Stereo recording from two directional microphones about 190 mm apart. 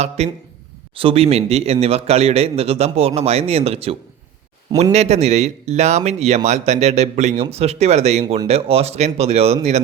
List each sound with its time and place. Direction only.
0.2 s a man's voice: 35° right (ahead or behind)